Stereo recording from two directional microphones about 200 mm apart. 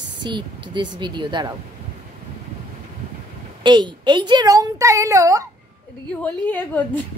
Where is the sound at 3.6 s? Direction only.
20° right (ahead or behind).